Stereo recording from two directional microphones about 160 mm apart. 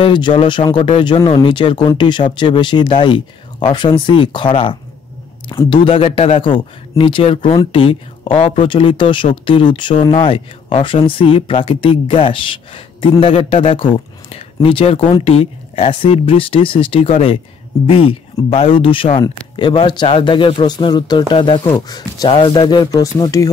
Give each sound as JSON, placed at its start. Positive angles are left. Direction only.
{"t": 0.0, "sound": "a man's voice", "side_deg": 30}